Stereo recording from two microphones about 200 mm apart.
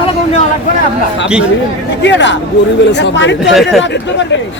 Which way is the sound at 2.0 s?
60° left (ahead or behind).